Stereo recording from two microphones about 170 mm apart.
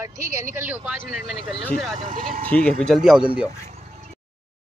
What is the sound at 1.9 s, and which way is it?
Speech, 50° right (ahead or behind).